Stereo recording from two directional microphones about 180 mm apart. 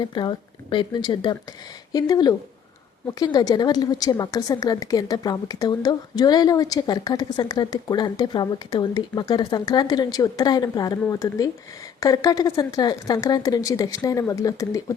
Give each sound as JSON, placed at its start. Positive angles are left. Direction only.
{"t": 0.0, "sound": "a woman's voice", "side_deg": 25}